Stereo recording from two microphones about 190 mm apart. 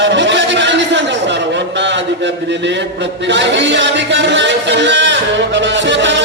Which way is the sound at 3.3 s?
70° right (ahead or behind).